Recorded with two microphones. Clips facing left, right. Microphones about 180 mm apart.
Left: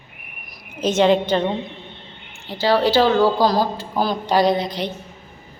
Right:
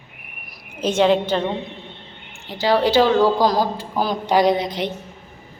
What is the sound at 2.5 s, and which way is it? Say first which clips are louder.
A woman's voice: even; 15° right (ahead or behind).